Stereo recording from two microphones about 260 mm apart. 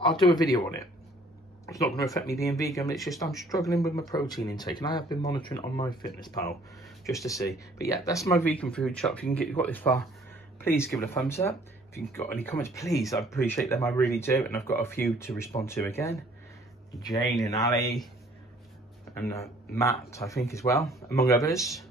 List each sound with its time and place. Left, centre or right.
0.0 s speech: centre
2.0 s speech: centre
3.3 s speech: centre
3.6 s speech: centre
6.8 s a sound: centre
7.2 s speech: centre
19.1 s speech: centre
21.4 s speech: centre